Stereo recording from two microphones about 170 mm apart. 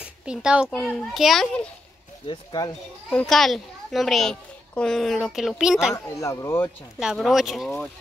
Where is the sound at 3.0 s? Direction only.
5° left (ahead or behind).